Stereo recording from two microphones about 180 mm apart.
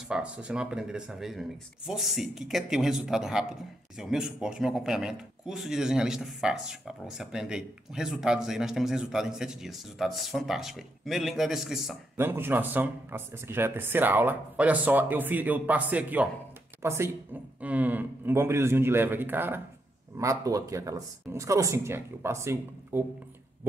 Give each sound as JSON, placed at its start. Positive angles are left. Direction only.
{"t": 0.1, "sound": "speech", "side_deg": -5}
{"t": 12.2, "sound": "speech", "side_deg": -10}